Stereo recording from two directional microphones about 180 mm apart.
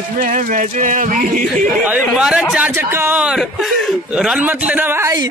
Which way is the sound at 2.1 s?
Centre (ahead or behind).